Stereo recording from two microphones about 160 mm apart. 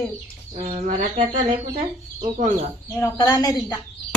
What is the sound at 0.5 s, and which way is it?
Speech, 50° right (ahead or behind).